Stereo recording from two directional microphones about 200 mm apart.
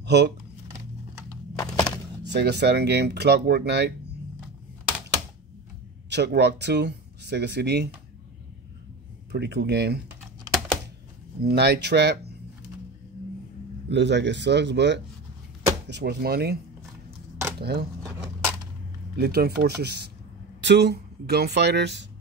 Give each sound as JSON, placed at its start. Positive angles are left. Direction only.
{"t": 0.0, "sound": "speech", "side_deg": -60}
{"t": 1.3, "sound": "a sound", "side_deg": 15}
{"t": 2.2, "sound": "speech", "side_deg": -55}
{"t": 6.0, "sound": "speech", "side_deg": -60}
{"t": 9.3, "sound": "speech", "side_deg": -55}
{"t": 11.4, "sound": "speech", "side_deg": -55}
{"t": 13.8, "sound": "speech", "side_deg": -60}
{"t": 17.6, "sound": "speech", "side_deg": -55}
{"t": 19.1, "sound": "speech", "side_deg": -50}